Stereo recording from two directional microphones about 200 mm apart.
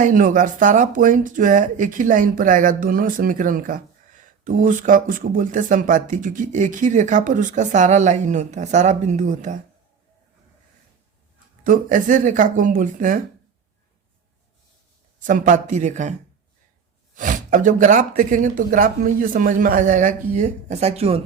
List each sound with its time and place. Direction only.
0.0 s speech: 40° right (ahead or behind)
11.6 s speech: 40° right (ahead or behind)
15.2 s speech: 40° right (ahead or behind)
17.2 s speech: 40° right (ahead or behind)